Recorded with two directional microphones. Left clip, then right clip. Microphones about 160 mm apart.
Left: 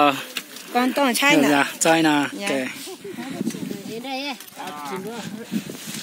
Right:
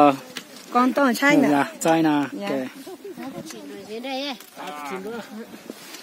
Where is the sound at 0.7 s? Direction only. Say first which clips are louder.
Right 1 dB; 90° right.